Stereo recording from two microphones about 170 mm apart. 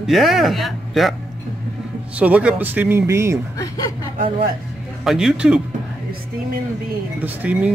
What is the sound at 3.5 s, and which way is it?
Speech, 20° left (ahead or behind).